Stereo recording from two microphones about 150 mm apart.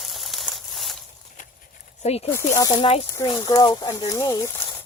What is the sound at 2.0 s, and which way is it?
Speech, 45° left (ahead or behind).